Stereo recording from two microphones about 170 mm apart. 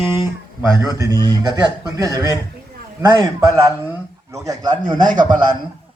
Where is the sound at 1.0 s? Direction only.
25° right (ahead or behind).